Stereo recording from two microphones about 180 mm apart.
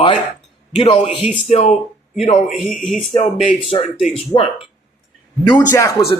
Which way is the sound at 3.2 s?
30° left (ahead or behind).